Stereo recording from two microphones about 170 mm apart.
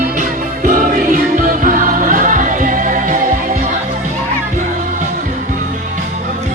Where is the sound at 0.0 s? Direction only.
50° right (ahead or behind).